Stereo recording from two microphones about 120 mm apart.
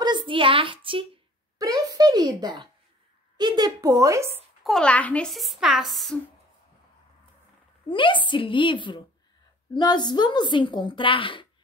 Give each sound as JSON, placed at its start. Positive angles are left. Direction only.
{"t": 0.0, "sound": "a sound", "side_deg": -40}
{"t": 1.6, "sound": "a sound", "side_deg": -30}
{"t": 3.3, "sound": "a woman's voice", "side_deg": -35}
{"t": 4.6, "sound": "a child's voice", "side_deg": 5}
{"t": 5.3, "sound": "a woman's voice", "side_deg": 0}
{"t": 7.9, "sound": "a woman's voice", "side_deg": 45}